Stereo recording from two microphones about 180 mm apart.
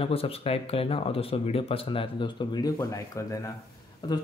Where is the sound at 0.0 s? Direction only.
30° left (ahead or behind).